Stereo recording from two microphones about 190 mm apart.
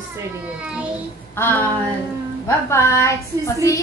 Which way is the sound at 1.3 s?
10° left (ahead or behind).